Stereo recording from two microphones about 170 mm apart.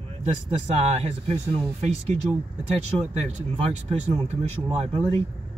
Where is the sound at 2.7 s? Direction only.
40° right (ahead or behind).